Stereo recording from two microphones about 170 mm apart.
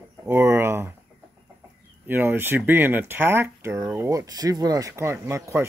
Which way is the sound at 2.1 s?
10° right (ahead or behind).